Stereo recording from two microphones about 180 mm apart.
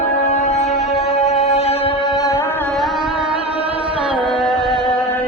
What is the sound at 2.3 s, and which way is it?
Carnatic music, 10° left (ahead or behind).